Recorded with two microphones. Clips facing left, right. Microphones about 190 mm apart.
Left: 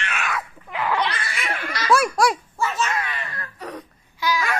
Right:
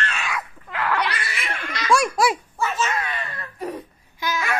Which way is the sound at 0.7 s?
15° left (ahead or behind).